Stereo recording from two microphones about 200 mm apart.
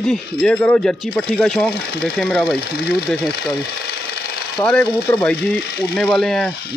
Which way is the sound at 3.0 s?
Centre (ahead or behind).